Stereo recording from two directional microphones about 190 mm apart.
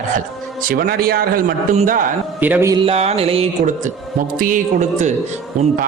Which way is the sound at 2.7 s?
30° right (ahead or behind).